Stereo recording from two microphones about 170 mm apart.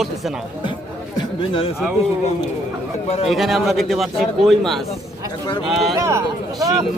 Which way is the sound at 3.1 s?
35° left (ahead or behind).